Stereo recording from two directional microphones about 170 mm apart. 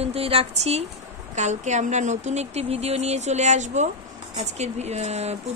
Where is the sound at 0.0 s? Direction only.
35° right (ahead or behind).